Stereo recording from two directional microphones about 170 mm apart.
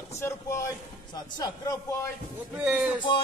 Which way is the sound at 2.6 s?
5° right (ahead or behind).